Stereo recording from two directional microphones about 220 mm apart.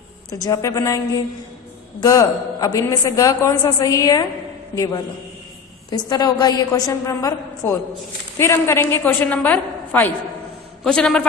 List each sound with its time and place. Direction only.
0.3 s a woman's voice: 15° left (ahead or behind)